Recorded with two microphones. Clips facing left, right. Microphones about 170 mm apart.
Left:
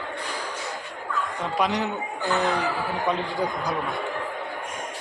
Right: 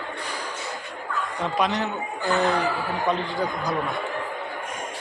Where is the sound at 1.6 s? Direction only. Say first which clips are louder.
Even; 10° left (ahead or behind).